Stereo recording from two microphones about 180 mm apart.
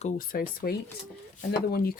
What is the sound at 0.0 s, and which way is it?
Speech, 50° left (ahead or behind).